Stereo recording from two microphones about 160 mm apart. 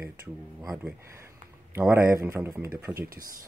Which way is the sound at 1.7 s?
15° right (ahead or behind).